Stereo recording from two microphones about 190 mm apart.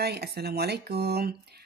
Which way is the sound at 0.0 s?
60° right (ahead or behind).